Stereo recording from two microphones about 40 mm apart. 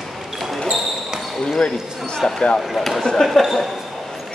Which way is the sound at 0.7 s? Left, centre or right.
Centre.